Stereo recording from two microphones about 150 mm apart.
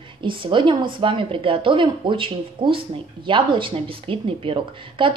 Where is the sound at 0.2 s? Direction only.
35° right (ahead or behind).